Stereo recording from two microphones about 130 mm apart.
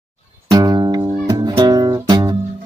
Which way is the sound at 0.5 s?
30° right (ahead or behind).